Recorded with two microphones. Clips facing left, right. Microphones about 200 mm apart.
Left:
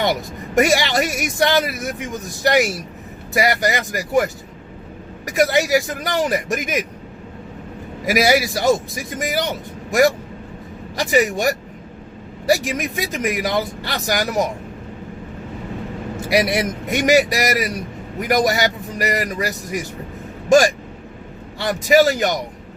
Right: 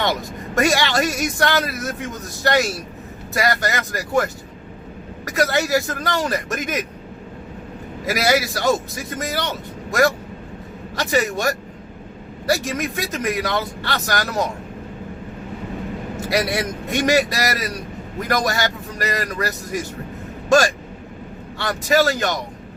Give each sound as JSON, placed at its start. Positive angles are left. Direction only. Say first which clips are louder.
{"t": 0.5, "sound": "a man's voice", "louder": "left 2 dB", "side_deg": 20}
{"t": 8.0, "sound": "a man's voice", "louder": "left 3 dB", "side_deg": 15}
{"t": 11.1, "sound": "a man's voice", "louder": "left 3 dB", "side_deg": 20}
{"t": 16.3, "sound": "a man's voice", "louder": "left 3 dB", "side_deg": 20}